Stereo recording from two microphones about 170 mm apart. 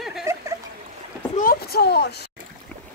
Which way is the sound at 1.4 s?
60° left (ahead or behind).